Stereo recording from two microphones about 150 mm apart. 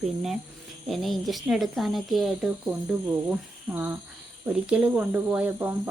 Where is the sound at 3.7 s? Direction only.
Centre (ahead or behind).